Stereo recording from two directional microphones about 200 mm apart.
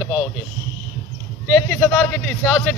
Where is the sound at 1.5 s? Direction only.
10° left (ahead or behind).